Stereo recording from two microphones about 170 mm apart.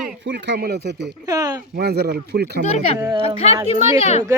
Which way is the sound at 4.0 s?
40° left (ahead or behind).